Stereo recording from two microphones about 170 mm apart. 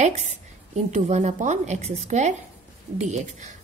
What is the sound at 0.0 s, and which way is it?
A woman's voice, 45° right (ahead or behind).